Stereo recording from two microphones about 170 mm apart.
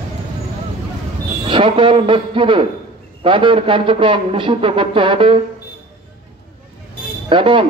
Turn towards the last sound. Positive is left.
turn(degrees=-30)  # may be behind; listen again after turning